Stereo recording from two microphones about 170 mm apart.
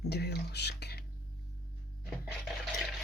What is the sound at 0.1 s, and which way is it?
Whispering, 75° left (ahead or behind).